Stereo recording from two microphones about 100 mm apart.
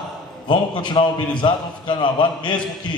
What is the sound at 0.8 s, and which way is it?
A man's voice, 55° left (ahead or behind).